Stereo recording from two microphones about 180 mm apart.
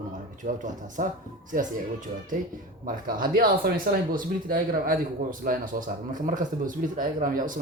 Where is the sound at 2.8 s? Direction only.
50° right (ahead or behind).